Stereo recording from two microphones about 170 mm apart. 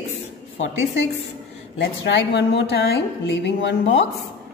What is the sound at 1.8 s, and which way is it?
A woman's voice, 90° left.